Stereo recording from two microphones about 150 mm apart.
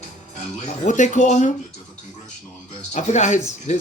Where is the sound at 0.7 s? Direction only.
55° left (ahead or behind).